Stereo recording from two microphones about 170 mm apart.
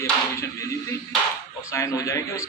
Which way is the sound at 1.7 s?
20° left (ahead or behind).